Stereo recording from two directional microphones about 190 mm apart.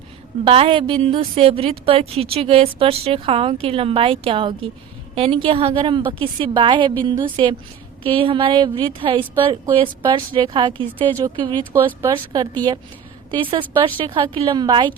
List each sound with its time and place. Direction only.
0.4 s a woman's voice: 30° right (ahead or behind)